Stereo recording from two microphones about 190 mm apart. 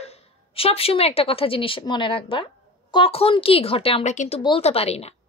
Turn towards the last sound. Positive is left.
turn(degrees=35)  # may be behind; listen again after turning